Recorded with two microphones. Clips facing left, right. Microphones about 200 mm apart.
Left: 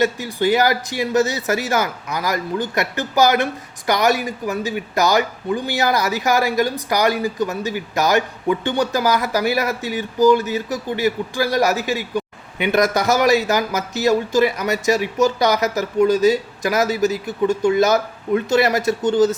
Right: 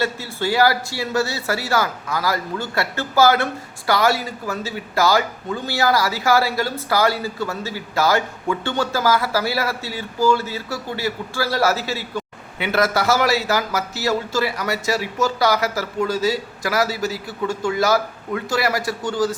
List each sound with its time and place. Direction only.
0.0 s speech: 15° left (ahead or behind)